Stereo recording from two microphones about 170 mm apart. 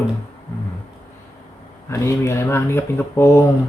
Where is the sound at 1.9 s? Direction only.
15° left (ahead or behind).